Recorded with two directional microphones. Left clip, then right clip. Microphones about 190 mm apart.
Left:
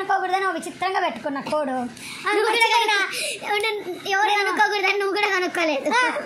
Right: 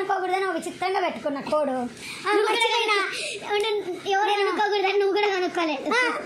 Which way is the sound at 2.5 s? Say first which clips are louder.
Left 4 dB; 35° left (ahead or behind).